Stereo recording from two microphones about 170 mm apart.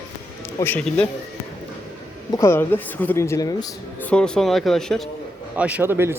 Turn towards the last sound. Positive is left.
turn(degrees=-15)  # may be behind; listen again after turning